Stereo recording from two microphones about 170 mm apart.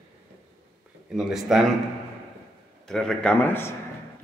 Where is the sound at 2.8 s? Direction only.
5° left (ahead or behind).